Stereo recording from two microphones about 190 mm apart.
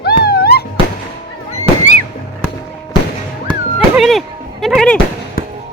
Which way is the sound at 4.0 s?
Centre (ahead or behind).